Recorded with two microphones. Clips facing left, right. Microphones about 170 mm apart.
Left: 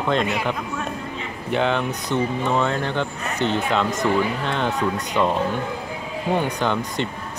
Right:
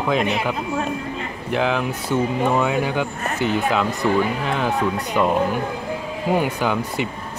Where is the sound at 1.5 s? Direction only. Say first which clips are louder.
Even; 5° right (ahead or behind).